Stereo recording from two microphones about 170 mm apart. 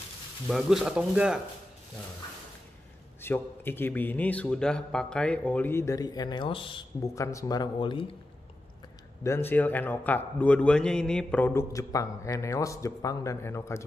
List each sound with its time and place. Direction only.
0.5 s speech: centre (ahead or behind)
3.2 s a man's voice: 15° left (ahead or behind); by 6.8 s 30° left (ahead or behind)
7.0 s speech: 20° left (ahead or behind)
9.2 s a man's voice: 15° left (ahead or behind)